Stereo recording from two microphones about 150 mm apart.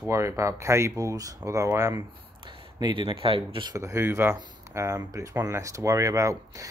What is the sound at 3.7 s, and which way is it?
Speech, 20° right (ahead or behind).